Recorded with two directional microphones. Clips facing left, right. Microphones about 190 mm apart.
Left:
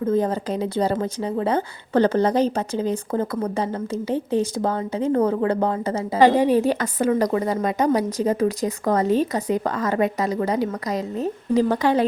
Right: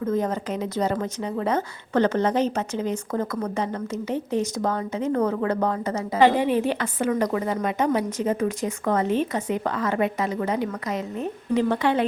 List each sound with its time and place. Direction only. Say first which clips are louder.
0.0 s a woman's voice: left 3 dB; 30° left (ahead or behind)